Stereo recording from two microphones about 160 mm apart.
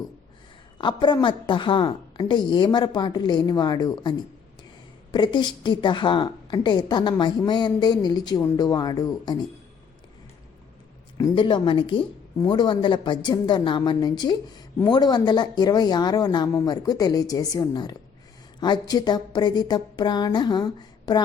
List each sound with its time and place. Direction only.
0.8 s a woman's voice: 30° left (ahead or behind)
5.1 s a woman's voice: 30° left (ahead or behind)
11.3 s a woman's voice: 30° left (ahead or behind)